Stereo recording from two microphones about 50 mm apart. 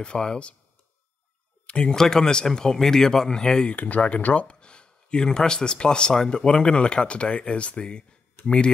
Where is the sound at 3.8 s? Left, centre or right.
Left.